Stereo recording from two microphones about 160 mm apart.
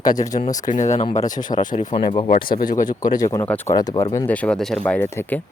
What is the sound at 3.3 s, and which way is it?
Speech, 10° left (ahead or behind).